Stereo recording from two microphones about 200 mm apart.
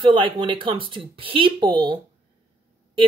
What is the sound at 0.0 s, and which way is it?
Speech, 25° right (ahead or behind).